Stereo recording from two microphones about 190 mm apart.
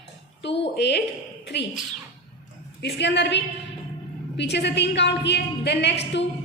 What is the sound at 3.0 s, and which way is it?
A woman's voice, 65° left (ahead or behind).